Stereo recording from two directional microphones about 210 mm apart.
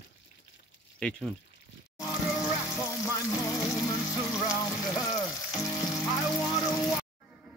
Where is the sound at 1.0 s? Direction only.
5° left (ahead or behind).